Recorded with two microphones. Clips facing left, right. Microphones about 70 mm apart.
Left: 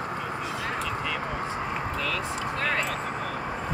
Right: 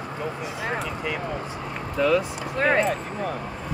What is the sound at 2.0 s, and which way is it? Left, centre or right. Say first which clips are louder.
Vehicle: right 7 dB; right.